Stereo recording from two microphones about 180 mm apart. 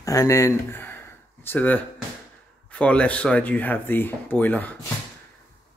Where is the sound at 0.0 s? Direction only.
20° left (ahead or behind).